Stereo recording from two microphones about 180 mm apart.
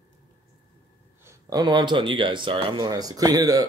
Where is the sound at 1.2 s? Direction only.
20° right (ahead or behind).